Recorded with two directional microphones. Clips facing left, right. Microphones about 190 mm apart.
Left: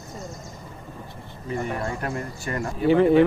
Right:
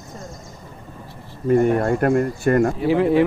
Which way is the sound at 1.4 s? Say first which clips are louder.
Right 12 dB; 55° right (ahead or behind).